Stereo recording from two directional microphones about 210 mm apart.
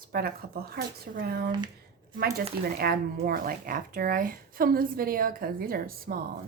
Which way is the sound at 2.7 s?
45° right (ahead or behind).